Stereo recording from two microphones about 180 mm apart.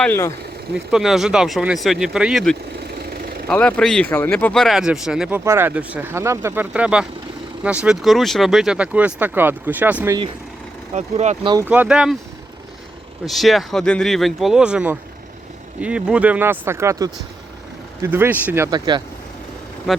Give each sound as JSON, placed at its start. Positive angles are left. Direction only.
{"t": 0.0, "sound": "speech", "side_deg": 15}
{"t": 0.7, "sound": "speech", "side_deg": -5}
{"t": 10.9, "sound": "speech", "side_deg": -40}
{"t": 11.6, "sound": "speech", "side_deg": -10}
{"t": 13.2, "sound": "speech", "side_deg": 0}
{"t": 19.9, "sound": "speech", "side_deg": 0}